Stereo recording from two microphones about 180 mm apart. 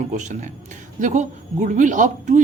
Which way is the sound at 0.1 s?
45° right (ahead or behind).